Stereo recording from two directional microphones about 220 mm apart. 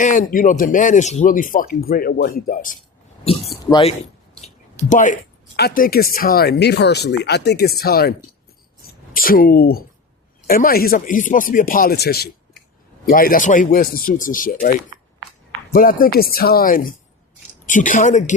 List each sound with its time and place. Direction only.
0.0 s speech: 35° left (ahead or behind)
3.7 s speech: 25° left (ahead or behind)
4.4 s a sound: 30° left (ahead or behind)
5.5 s speech: 45° left (ahead or behind)
9.1 s speech: 40° left (ahead or behind)
15.7 s speech: 40° left (ahead or behind)